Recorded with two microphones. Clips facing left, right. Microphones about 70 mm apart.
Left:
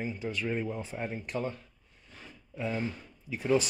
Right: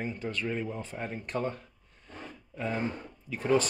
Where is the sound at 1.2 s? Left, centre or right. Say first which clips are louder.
Right 2 dB; right.